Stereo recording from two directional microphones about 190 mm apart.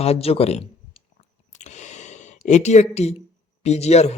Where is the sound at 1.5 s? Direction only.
40° left (ahead or behind).